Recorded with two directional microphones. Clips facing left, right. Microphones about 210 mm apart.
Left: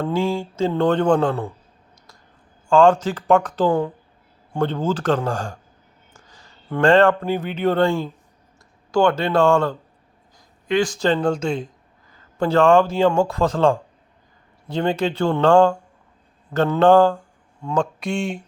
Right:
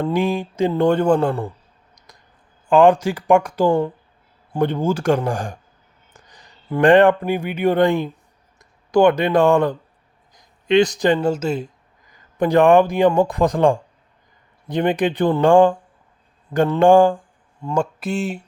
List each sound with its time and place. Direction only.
0.0 s speech: 15° right (ahead or behind)
2.6 s speech: 15° right (ahead or behind)
3.7 s speech: centre (ahead or behind)
4.5 s speech: 15° right (ahead or behind)
16.8 s speech: 15° right (ahead or behind)
17.6 s speech: 5° right (ahead or behind)